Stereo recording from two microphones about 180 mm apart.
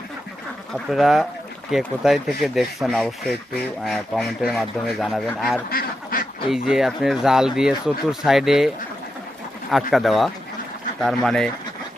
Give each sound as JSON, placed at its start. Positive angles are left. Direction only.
{"t": 0.7, "sound": "speech", "side_deg": 0}
{"t": 5.7, "sound": "duck", "side_deg": 50}
{"t": 6.5, "sound": "speech", "side_deg": 0}
{"t": 9.7, "sound": "speech", "side_deg": 0}